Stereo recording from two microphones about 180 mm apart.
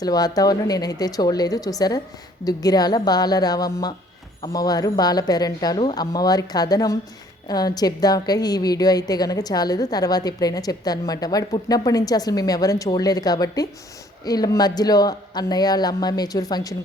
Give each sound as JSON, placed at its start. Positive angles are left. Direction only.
{"t": 0.0, "sound": "a woman's voice", "side_deg": 20}